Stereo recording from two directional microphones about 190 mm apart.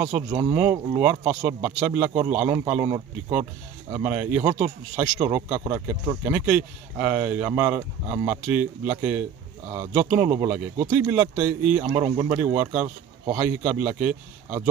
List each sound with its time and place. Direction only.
0.0 s speech: 15° right (ahead or behind)